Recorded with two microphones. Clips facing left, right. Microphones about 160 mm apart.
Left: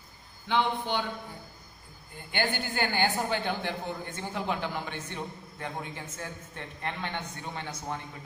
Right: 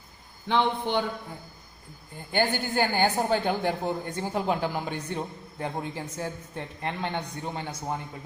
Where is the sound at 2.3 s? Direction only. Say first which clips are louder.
Right 5 dB; 40° right (ahead or behind).